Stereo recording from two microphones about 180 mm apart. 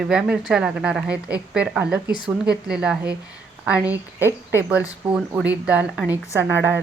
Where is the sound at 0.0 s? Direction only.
5° right (ahead or behind).